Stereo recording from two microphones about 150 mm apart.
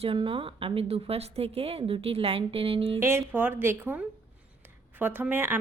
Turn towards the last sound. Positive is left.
turn(degrees=-15)  # may be behind; listen again after turning